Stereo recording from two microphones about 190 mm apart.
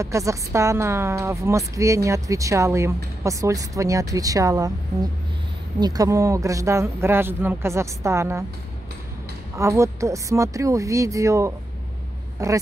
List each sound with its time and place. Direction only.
0.0 s a woman's voice: 15° right (ahead or behind)
9.6 s a woman's voice: 15° right (ahead or behind)